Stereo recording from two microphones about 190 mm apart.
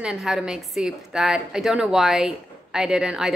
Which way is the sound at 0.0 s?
5° right (ahead or behind).